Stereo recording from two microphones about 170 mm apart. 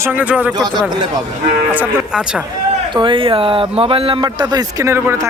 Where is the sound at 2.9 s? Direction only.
30° right (ahead or behind).